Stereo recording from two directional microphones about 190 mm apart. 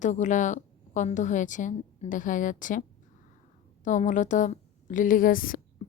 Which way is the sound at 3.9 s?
40° left (ahead or behind).